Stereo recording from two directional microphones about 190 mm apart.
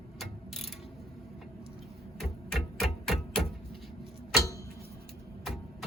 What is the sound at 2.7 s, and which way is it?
Music, centre (ahead or behind).